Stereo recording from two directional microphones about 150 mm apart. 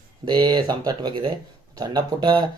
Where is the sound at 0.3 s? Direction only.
30° right (ahead or behind).